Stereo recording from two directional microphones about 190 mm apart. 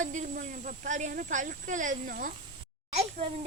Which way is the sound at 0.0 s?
40° right (ahead or behind).